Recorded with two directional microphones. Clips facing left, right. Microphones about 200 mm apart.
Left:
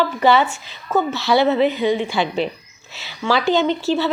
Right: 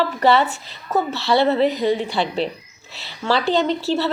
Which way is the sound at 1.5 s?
35° right (ahead or behind).